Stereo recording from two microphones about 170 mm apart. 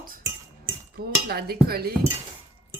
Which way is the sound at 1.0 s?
65° right (ahead or behind).